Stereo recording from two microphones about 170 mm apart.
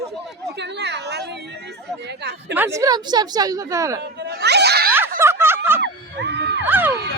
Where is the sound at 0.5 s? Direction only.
85° right.